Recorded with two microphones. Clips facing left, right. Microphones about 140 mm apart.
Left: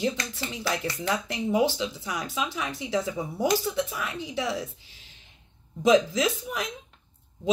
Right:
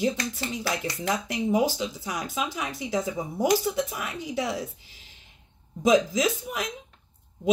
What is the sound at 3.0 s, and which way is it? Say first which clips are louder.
Speech: right 1 dB; 15° right (ahead or behind).